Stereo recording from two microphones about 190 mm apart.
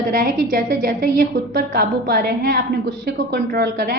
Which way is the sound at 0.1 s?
50° right (ahead or behind).